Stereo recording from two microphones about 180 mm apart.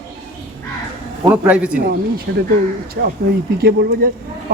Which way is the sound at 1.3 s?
10° right (ahead or behind).